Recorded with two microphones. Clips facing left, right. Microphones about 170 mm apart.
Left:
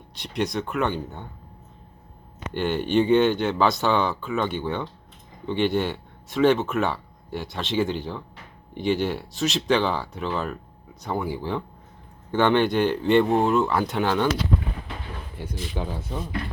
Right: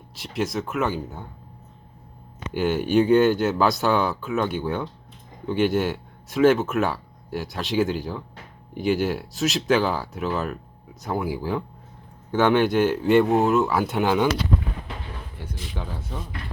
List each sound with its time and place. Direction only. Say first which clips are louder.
0.1 s speech: even; centre (ahead or behind)
2.5 s speech: right 2 dB; 5° right (ahead or behind)
15.8 s speech: left 4 dB; 15° left (ahead or behind)